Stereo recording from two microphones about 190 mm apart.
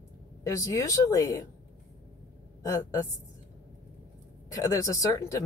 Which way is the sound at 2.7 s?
15° left (ahead or behind).